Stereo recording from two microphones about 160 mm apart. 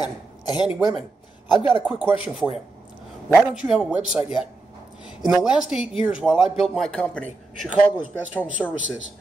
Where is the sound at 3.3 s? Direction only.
Centre (ahead or behind).